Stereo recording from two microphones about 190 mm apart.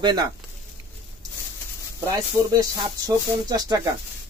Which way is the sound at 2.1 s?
20° right (ahead or behind).